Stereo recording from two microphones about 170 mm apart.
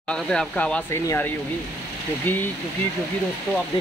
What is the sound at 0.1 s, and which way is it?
Speech, 5° left (ahead or behind).